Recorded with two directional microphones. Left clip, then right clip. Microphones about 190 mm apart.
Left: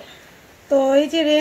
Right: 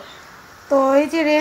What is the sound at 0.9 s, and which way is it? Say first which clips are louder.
Speech: even; 20° left (ahead or behind).